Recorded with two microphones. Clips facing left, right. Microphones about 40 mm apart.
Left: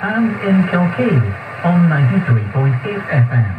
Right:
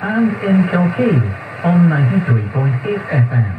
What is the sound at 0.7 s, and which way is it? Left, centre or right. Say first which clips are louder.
Speech: even; left.